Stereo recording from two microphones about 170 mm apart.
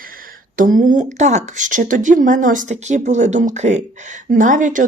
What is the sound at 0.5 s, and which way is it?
Speech, 50° right (ahead or behind).